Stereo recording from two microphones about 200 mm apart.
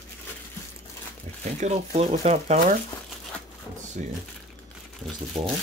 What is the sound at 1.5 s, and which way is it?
Speech, 35° right (ahead or behind).